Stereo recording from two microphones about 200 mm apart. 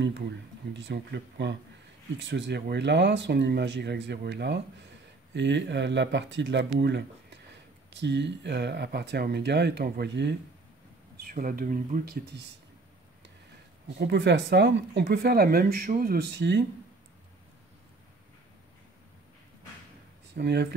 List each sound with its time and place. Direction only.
0.7 s speech: 60° right (ahead or behind)
11.2 s speech: 45° right (ahead or behind)
13.9 s speech: 55° right (ahead or behind)
20.3 s speech: 55° right (ahead or behind)